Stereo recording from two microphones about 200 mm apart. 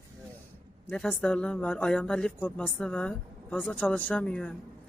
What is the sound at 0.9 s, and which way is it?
Speech, 5° left (ahead or behind).